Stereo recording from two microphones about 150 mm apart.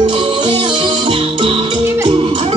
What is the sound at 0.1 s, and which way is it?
Music, 35° right (ahead or behind).